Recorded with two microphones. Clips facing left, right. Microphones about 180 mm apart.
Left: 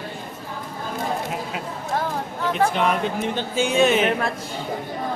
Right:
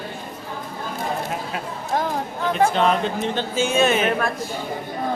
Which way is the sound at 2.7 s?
15° left (ahead or behind).